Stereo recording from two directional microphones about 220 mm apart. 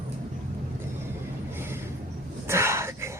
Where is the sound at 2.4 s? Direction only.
10° right (ahead or behind).